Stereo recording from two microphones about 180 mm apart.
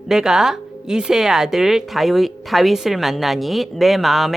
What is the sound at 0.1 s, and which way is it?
Speech, 5° right (ahead or behind).